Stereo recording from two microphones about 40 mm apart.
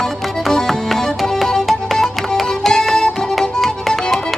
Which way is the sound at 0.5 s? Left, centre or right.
Centre.